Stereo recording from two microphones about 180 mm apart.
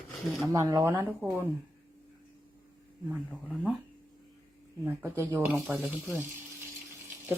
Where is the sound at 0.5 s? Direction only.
20° right (ahead or behind).